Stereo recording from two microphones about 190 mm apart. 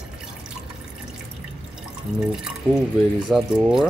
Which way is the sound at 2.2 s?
5° right (ahead or behind).